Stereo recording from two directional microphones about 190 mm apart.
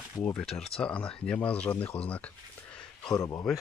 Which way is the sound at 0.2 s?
5° left (ahead or behind).